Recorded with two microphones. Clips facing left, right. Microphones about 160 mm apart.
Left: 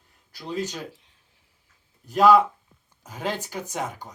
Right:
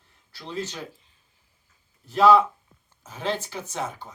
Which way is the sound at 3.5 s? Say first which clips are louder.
Left 1 dB; 15° left (ahead or behind).